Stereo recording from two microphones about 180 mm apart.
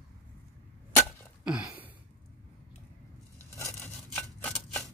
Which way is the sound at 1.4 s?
5° right (ahead or behind).